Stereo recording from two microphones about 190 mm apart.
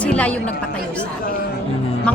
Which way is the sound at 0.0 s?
5° left (ahead or behind).